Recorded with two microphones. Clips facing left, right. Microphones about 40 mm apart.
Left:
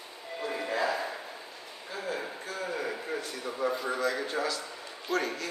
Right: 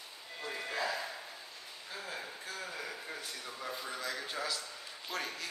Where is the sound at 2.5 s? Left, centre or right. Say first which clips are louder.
Left 9 dB; left.